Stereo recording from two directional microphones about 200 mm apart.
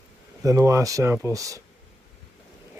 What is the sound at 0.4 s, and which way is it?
Speech, 15° right (ahead or behind).